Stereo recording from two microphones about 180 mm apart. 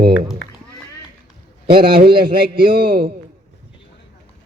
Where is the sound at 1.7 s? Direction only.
60° right (ahead or behind).